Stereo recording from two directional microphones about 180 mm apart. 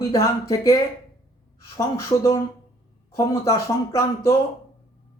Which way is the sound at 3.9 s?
15° left (ahead or behind).